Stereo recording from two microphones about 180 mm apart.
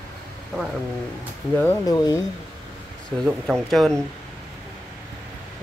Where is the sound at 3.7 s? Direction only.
Centre (ahead or behind).